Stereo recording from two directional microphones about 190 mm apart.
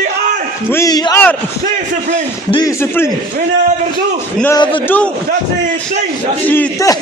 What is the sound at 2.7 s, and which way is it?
Speech, 15° left (ahead or behind).